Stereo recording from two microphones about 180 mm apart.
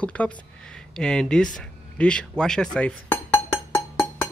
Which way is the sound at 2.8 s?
10° left (ahead or behind).